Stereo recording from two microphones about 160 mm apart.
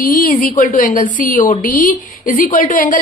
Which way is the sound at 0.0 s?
60° left (ahead or behind).